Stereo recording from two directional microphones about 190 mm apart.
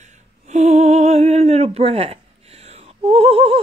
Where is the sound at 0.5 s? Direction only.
35° right (ahead or behind).